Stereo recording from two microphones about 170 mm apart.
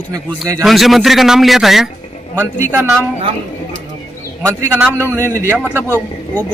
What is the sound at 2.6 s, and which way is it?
Speech, 15° right (ahead or behind).